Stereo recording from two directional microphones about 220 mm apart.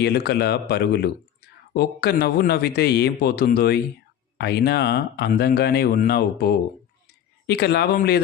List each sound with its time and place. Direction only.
0.0 s speech: 45° left (ahead or behind)